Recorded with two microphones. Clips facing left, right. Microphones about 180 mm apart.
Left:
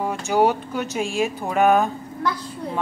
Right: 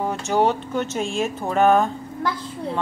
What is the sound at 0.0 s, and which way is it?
Speech, 5° left (ahead or behind).